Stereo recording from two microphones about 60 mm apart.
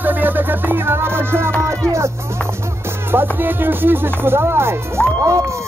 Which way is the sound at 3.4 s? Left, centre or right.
Right.